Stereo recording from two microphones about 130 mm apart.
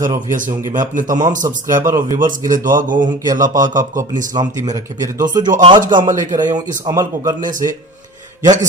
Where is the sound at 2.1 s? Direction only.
90° right.